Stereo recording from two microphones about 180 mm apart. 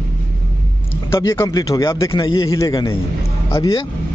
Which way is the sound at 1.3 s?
20° left (ahead or behind).